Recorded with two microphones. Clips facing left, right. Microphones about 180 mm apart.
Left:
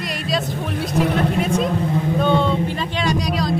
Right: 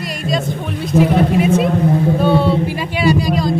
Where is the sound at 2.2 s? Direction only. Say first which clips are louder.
Right 4 dB; 5° right (ahead or behind).